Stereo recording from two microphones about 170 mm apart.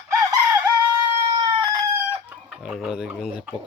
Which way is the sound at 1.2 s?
30° right (ahead or behind).